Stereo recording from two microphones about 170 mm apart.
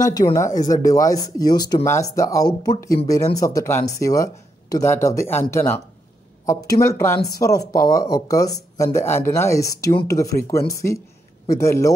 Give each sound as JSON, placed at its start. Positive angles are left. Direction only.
{"t": 0.0, "sound": "speech", "side_deg": 20}
{"t": 6.8, "sound": "speech", "side_deg": 15}